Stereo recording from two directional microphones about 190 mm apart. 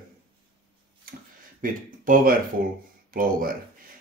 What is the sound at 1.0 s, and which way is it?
Speech, 50° right (ahead or behind).